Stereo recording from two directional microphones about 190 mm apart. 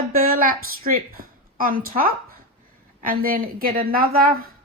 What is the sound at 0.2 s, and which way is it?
A woman's voice, 45° right (ahead or behind).